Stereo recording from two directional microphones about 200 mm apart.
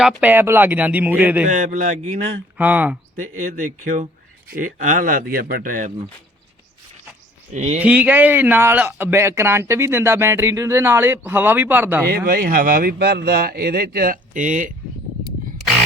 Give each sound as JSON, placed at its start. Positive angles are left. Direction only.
{"t": 0.0, "sound": "speech", "side_deg": -5}
{"t": 1.5, "sound": "speech", "side_deg": -40}
{"t": 2.6, "sound": "speech", "side_deg": -10}
{"t": 3.3, "sound": "a man's voice", "side_deg": -40}
{"t": 7.5, "sound": "speech", "side_deg": -35}
{"t": 7.8, "sound": "speech", "side_deg": -5}
{"t": 12.0, "sound": "a man's voice", "side_deg": -50}